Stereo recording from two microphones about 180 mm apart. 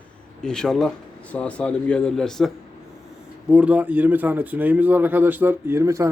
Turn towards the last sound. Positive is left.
turn(degrees=-15)  # may be behind; listen again after turning